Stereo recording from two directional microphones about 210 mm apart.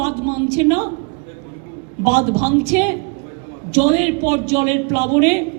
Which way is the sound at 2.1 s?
35° right (ahead or behind).